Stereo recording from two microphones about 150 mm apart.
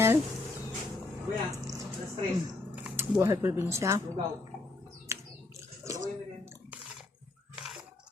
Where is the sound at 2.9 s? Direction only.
15° right (ahead or behind).